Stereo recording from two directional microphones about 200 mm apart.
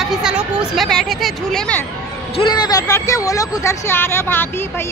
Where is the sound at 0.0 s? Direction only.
Centre (ahead or behind).